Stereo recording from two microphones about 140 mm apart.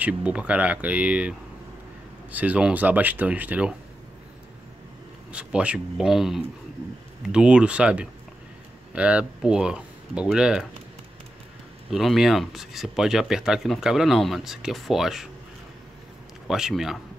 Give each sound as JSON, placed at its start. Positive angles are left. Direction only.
{"t": 0.0, "sound": "speech", "side_deg": -10}
{"t": 2.3, "sound": "speech", "side_deg": -10}
{"t": 5.3, "sound": "speech", "side_deg": -10}
{"t": 11.9, "sound": "speech", "side_deg": 0}
{"t": 16.4, "sound": "speech", "side_deg": -5}